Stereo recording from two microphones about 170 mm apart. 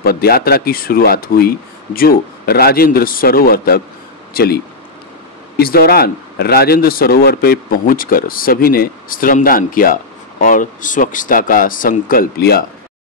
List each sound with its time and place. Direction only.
0.0 s speech: 65° left (ahead or behind)
5.6 s a man's voice: 65° left (ahead or behind)